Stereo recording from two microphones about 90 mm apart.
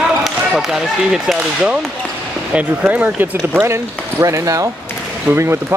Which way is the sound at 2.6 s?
20° right (ahead or behind).